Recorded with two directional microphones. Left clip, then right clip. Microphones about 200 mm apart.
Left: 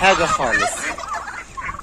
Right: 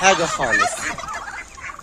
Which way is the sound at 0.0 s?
20° right (ahead or behind).